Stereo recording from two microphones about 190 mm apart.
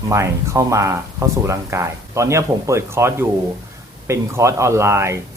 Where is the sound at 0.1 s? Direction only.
15° right (ahead or behind).